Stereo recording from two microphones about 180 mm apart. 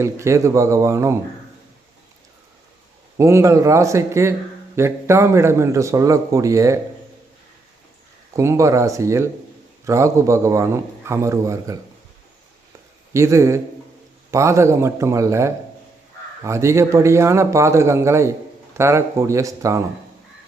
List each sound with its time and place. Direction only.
0.0 s a man's voice: 15° right (ahead or behind)
3.2 s a man's voice: 15° right (ahead or behind)
8.4 s a man's voice: 15° right (ahead or behind)
13.1 s a man's voice: 15° right (ahead or behind)